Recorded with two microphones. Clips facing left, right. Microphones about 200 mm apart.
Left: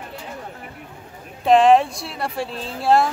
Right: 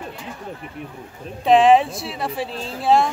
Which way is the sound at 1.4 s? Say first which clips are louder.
Even; centre (ahead or behind).